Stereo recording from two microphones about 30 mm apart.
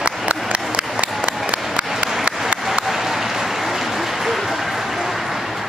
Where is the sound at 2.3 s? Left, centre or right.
Right.